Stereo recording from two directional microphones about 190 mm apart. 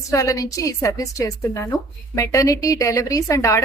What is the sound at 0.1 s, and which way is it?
A woman's voice, 15° left (ahead or behind).